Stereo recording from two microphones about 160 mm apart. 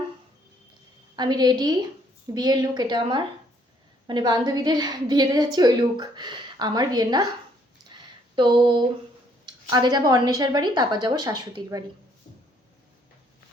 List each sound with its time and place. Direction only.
1.1 s a woman's voice: 25° right (ahead or behind)
8.4 s a woman's voice: 30° right (ahead or behind)